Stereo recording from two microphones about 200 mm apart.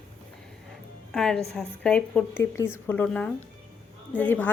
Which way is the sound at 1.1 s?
5° left (ahead or behind).